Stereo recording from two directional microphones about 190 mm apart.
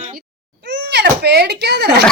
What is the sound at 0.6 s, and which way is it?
A child's voice, 65° right (ahead or behind).